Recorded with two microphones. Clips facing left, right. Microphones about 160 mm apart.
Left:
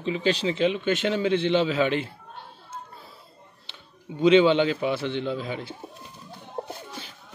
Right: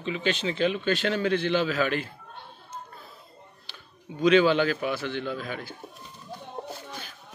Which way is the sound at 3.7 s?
25° left (ahead or behind).